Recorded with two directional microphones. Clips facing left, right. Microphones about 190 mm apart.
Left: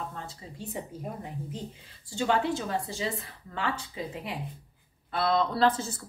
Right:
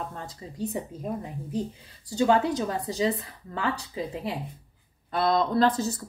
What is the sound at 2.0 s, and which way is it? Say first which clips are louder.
A woman's voice: right 5 dB; 40° right (ahead or behind).